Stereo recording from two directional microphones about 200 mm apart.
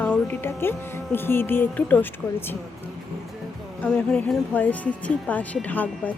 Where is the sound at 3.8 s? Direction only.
5° left (ahead or behind).